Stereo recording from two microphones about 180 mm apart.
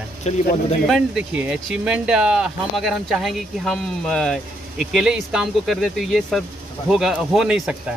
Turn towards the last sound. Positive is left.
turn(degrees=-5)  # may be behind; listen again after turning